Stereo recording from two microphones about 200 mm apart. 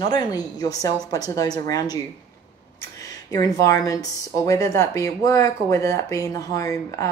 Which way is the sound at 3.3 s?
20° left (ahead or behind).